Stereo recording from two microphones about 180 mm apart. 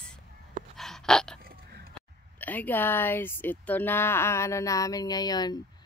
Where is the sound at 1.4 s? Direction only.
55° right (ahead or behind).